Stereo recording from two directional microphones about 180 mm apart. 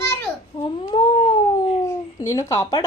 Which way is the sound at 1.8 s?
20° left (ahead or behind).